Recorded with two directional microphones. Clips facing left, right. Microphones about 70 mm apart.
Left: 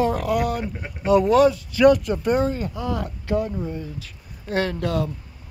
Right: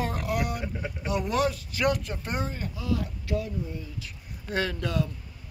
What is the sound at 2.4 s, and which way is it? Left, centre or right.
Speech, left.